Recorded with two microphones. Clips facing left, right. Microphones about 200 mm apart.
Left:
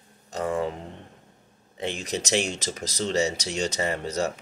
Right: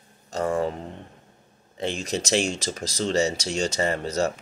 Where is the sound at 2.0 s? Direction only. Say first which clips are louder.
Right 2 dB; 20° left (ahead or behind).